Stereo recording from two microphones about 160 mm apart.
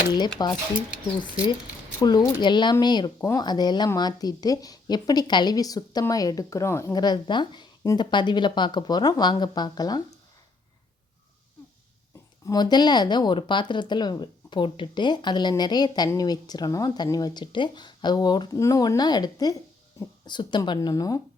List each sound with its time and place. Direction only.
0.4 s speech: 25° left (ahead or behind)
2.0 s speech: 25° left (ahead or behind)
12.5 s speech: 25° left (ahead or behind)